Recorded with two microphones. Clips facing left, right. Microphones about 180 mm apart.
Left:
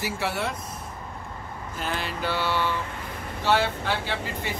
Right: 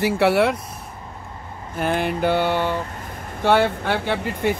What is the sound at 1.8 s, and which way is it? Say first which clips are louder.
Mantra: right 9 dB; 55° right (ahead or behind).